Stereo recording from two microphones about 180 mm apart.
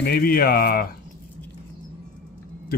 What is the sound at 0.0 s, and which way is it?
Speech, 55° left (ahead or behind).